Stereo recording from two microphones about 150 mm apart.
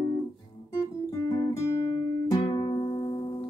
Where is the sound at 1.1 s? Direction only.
25° left (ahead or behind).